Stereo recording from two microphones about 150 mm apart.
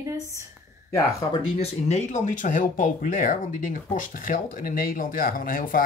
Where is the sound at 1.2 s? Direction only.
25° left (ahead or behind).